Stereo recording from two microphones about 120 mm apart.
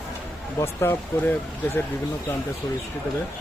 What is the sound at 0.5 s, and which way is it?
Speech, 20° left (ahead or behind).